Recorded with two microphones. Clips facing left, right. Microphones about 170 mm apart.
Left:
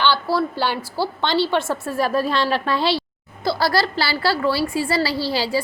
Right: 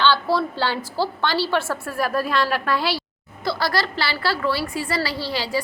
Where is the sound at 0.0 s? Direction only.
10° left (ahead or behind).